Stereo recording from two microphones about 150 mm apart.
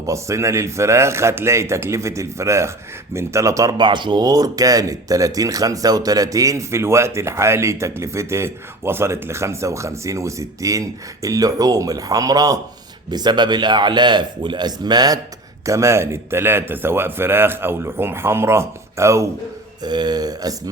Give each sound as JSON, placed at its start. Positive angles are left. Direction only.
{"t": 0.0, "sound": "a man's voice", "side_deg": -20}